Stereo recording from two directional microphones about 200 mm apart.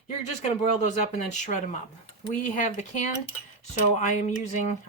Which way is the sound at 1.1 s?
35° left (ahead or behind).